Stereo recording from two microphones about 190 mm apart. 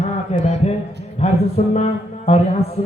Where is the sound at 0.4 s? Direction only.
35° left (ahead or behind).